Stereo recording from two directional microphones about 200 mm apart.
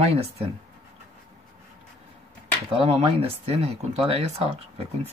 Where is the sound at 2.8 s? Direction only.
30° right (ahead or behind).